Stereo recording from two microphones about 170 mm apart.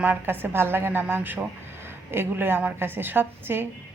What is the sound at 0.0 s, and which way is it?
A woman's voice, 10° right (ahead or behind).